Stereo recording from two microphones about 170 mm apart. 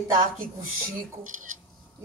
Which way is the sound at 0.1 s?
55° right (ahead or behind).